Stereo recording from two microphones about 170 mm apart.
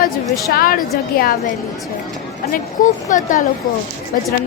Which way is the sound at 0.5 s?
60° left (ahead or behind).